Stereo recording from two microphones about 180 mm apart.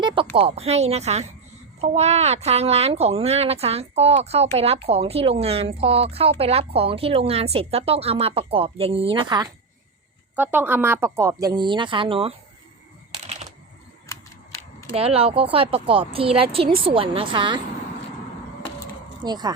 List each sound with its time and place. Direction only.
0.0 s a sound: 30° right (ahead or behind)
0.3 s speech: 35° right (ahead or behind)
10.3 s speech: 10° right (ahead or behind); by 12.3 s 30° right (ahead or behind)
14.1 s camera: 15° left (ahead or behind)
14.9 s a woman's voice: 30° right (ahead or behind)
19.2 s a woman's voice: 25° right (ahead or behind)